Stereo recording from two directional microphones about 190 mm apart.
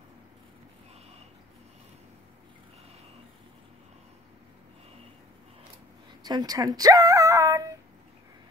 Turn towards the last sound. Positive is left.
turn(degrees=-15)  # may be behind; listen again after turning